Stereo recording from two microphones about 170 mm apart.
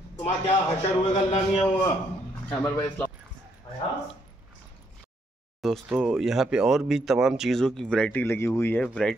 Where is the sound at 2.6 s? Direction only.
10° left (ahead or behind).